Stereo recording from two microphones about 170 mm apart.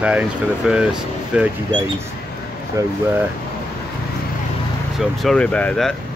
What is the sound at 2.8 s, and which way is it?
Speech, 20° right (ahead or behind).